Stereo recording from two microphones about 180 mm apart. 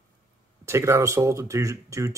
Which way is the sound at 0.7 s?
15° right (ahead or behind).